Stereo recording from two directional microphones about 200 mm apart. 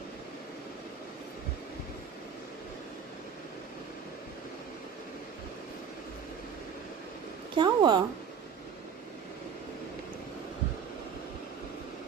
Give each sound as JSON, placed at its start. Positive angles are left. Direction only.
{"t": 7.5, "sound": "speech", "side_deg": -20}